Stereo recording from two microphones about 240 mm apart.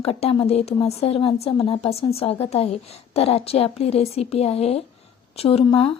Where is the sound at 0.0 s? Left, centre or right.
Left.